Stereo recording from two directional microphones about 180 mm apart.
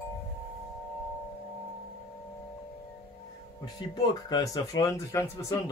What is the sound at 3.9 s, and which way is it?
Speech, 20° left (ahead or behind).